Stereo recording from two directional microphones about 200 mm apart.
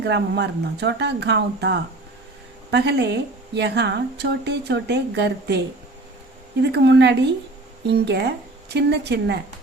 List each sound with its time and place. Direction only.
0.0 s a woman's voice: 60° right (ahead or behind)
6.6 s a woman's voice: 60° right (ahead or behind)